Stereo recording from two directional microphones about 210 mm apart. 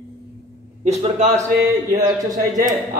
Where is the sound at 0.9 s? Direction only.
35° right (ahead or behind).